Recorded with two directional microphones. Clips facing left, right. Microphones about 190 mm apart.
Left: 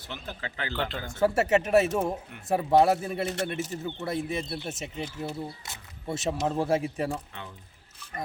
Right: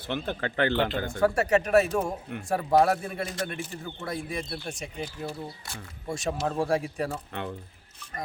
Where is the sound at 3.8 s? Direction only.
20° left (ahead or behind).